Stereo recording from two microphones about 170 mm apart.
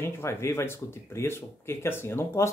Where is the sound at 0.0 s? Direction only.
15° left (ahead or behind).